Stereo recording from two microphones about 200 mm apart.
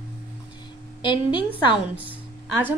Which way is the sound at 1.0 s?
25° left (ahead or behind).